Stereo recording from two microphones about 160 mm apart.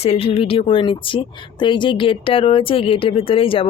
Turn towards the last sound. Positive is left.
turn(degrees=35)  # may be behind; listen again after turning